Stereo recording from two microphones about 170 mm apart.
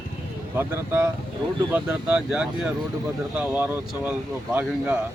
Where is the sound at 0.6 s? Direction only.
15° right (ahead or behind).